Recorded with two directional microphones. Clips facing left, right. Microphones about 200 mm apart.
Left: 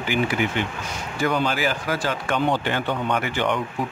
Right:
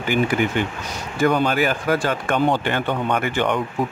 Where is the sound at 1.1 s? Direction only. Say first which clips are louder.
Right 5 dB; 50° right (ahead or behind).